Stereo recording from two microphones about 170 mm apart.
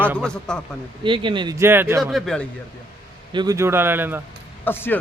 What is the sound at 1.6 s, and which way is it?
Speech, 15° right (ahead or behind).